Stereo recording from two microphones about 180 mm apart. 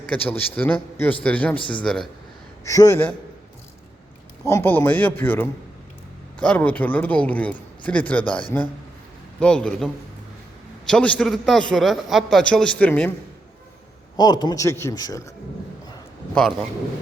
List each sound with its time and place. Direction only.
0.1 s a man's voice: 10° left (ahead or behind)
2.6 s speech: 20° left (ahead or behind)
4.4 s speech: 15° left (ahead or behind)
9.4 s a man's voice: 5° left (ahead or behind)
14.2 s speech: 25° left (ahead or behind)
16.3 s a man's voice: 5° left (ahead or behind)